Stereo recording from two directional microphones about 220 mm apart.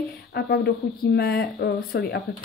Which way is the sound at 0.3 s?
50° left (ahead or behind).